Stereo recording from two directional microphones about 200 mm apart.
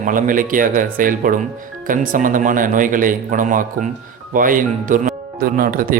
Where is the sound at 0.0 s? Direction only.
40° right (ahead or behind).